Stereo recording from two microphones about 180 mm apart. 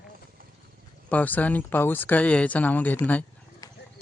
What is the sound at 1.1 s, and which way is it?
Speech, 10° left (ahead or behind).